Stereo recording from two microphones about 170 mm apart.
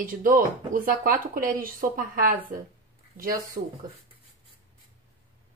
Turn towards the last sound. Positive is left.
turn(degrees=-60)  # may be behind; listen again after turning